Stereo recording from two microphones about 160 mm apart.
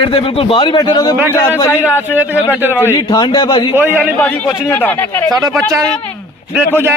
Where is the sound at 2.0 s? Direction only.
10° right (ahead or behind).